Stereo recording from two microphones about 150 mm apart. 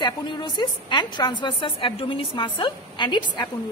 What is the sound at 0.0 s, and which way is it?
A woman's voice, 30° left (ahead or behind).